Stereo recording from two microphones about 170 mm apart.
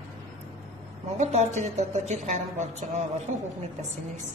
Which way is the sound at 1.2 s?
45° right (ahead or behind).